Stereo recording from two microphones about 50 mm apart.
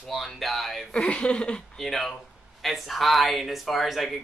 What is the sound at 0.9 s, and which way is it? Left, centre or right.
Speech, centre.